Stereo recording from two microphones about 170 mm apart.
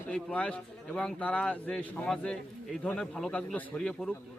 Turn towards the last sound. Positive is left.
turn(degrees=5)  # may be behind; listen again after turning